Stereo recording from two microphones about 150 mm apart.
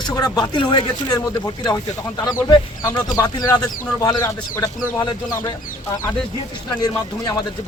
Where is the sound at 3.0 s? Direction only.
25° left (ahead or behind).